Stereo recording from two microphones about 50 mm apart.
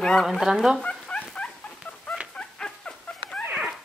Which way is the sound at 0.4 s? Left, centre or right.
Centre.